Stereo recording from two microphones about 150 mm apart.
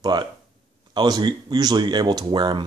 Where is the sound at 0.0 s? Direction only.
30° right (ahead or behind).